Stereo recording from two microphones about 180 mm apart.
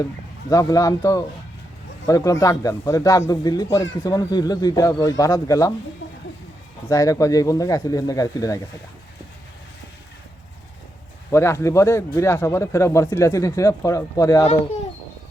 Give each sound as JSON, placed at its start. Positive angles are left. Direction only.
{"t": 0.5, "sound": "speech", "side_deg": 20}
{"t": 6.8, "sound": "speech", "side_deg": 20}
{"t": 11.3, "sound": "speech", "side_deg": 15}